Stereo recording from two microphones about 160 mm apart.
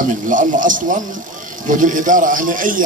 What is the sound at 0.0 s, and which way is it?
Speech, 55° right (ahead or behind).